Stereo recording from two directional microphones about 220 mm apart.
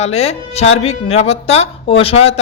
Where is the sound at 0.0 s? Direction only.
30° left (ahead or behind).